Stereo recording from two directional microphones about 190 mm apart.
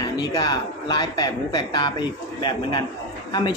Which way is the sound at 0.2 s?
20° left (ahead or behind).